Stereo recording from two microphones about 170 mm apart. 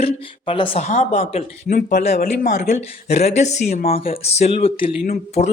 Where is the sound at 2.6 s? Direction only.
40° left (ahead or behind).